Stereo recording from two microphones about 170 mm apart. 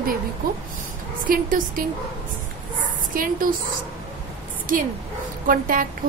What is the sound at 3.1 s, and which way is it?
Speech, 55° right (ahead or behind).